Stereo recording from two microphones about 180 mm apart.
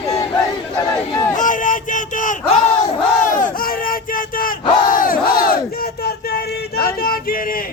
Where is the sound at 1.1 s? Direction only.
20° left (ahead or behind).